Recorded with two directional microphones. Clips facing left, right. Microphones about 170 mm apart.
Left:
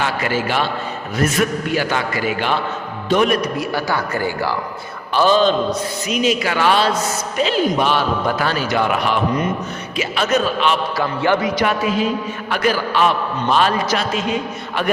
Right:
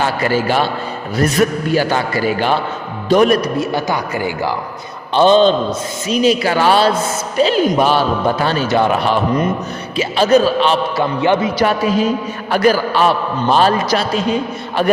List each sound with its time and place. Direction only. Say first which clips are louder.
0.0 s a man's voice: right 4 dB; 35° right (ahead or behind)
3.6 s a man's voice: right 3 dB; 20° right (ahead or behind)
5.1 s a man's voice: right 4 dB; 25° right (ahead or behind)
11.6 s a man's voice: right 4 dB; 35° right (ahead or behind)